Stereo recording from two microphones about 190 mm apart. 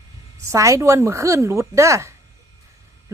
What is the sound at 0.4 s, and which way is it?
A woman's voice, 15° right (ahead or behind).